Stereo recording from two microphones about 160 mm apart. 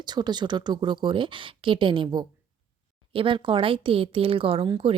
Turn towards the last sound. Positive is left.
turn(degrees=-35)  # may be behind; listen again after turning